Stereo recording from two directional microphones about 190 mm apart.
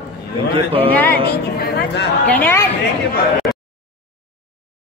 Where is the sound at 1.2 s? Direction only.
55° left (ahead or behind).